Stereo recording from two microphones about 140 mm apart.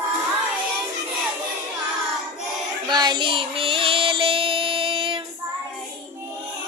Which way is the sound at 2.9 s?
30° right (ahead or behind).